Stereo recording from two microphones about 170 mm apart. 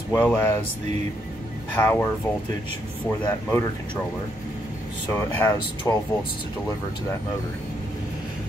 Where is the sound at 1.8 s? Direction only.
10° left (ahead or behind).